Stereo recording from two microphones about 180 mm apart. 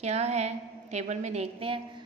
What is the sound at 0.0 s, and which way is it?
A woman's voice, 35° right (ahead or behind).